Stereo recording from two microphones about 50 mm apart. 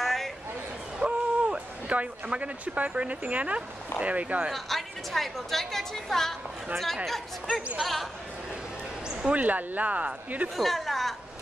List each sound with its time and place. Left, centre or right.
0.0 s a sound: centre
0.9 s a sound: right
4.0 s speech: right
4.5 s a woman's voice: centre
7.8 s a woman's voice: centre
9.2 s speech: right
10.5 s a woman's voice: centre